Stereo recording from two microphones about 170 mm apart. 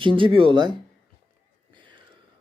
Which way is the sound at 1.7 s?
30° right (ahead or behind).